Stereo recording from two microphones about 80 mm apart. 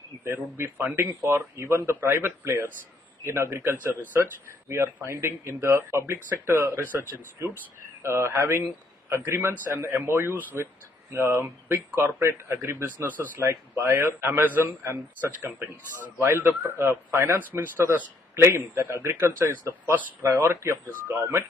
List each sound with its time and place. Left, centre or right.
0.2 s a man's voice: right
13.8 s a man's voice: right
14.8 s a man's voice: right